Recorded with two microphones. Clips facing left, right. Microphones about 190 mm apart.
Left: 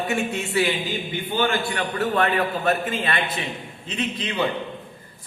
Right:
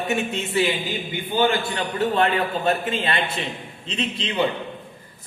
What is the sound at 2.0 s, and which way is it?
A man's voice, 25° right (ahead or behind).